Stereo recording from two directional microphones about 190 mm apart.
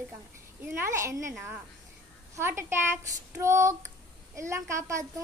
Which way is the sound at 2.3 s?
15° right (ahead or behind).